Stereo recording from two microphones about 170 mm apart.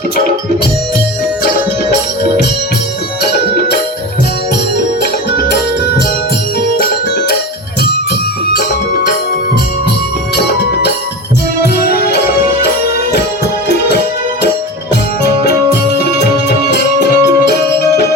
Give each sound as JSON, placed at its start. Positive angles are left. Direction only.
{"t": 5.4, "sound": "music", "side_deg": 65}
{"t": 10.3, "sound": "music", "side_deg": 75}
{"t": 16.1, "sound": "music", "side_deg": 75}